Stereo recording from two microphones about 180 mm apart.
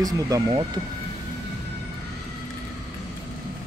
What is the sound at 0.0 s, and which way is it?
Speech, 25° right (ahead or behind).